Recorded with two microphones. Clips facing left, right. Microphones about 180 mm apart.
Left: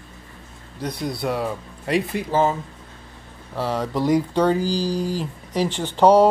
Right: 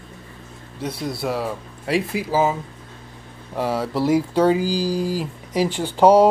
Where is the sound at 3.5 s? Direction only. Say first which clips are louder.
Right 1 dB; 10° right (ahead or behind).